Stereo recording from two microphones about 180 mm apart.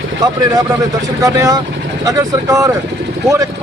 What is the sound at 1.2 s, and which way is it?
Speech, 20° right (ahead or behind).